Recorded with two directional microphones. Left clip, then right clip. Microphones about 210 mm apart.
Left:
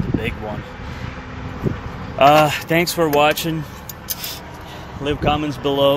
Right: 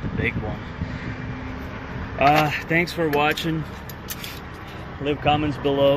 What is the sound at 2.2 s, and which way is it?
Speech, 10° left (ahead or behind).